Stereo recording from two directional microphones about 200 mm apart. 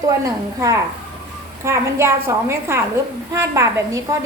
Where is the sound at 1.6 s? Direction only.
15° right (ahead or behind).